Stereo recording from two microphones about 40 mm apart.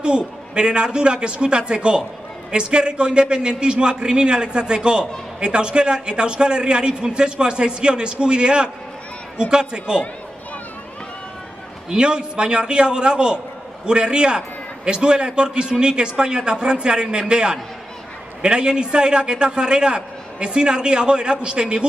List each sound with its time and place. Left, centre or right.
0.0 s a man's voice: right
11.9 s a man's voice: right